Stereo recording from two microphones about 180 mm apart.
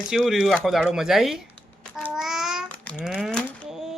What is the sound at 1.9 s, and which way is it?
Babbling, centre (ahead or behind).